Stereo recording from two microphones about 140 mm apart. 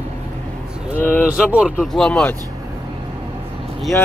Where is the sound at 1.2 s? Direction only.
5° right (ahead or behind).